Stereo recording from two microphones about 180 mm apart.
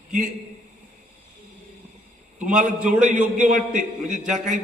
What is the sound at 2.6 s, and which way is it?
A man's voice, 45° right (ahead or behind).